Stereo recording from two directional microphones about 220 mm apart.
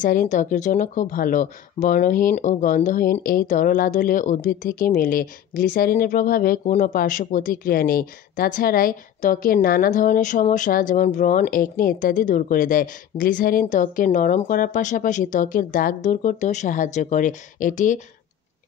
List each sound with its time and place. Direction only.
0.0 s speech: 35° left (ahead or behind)